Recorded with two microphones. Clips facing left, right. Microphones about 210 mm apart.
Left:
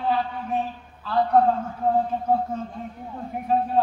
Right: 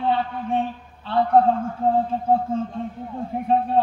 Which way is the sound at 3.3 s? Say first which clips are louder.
Right 5 dB; 30° right (ahead or behind).